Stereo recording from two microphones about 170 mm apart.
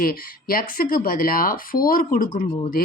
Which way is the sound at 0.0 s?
60° left (ahead or behind).